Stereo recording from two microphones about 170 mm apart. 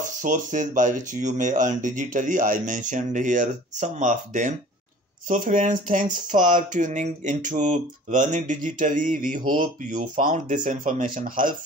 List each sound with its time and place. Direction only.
0.0 s speech: 45° right (ahead or behind)